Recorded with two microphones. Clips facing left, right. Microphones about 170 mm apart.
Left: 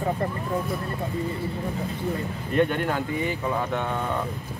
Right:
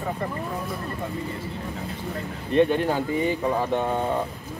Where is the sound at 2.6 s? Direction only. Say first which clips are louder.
Right 3 dB; 25° right (ahead or behind).